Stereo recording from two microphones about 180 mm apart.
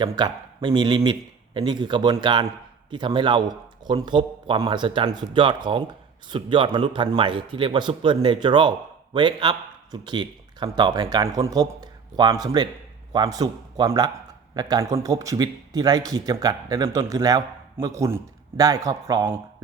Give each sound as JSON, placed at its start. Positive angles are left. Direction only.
{"t": 0.0, "sound": "speech", "side_deg": -25}